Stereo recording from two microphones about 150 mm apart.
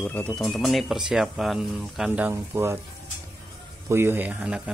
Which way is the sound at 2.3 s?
15° right (ahead or behind).